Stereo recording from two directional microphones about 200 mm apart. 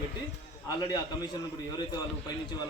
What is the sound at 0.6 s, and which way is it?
Speech, 20° left (ahead or behind).